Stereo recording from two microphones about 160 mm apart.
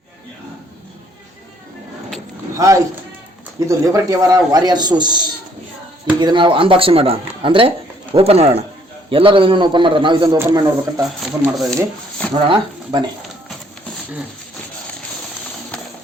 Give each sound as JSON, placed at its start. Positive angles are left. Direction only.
{"t": 3.7, "sound": "a man's voice", "side_deg": -20}
{"t": 11.2, "sound": "speech", "side_deg": 0}
{"t": 12.3, "sound": "a man's voice", "side_deg": -30}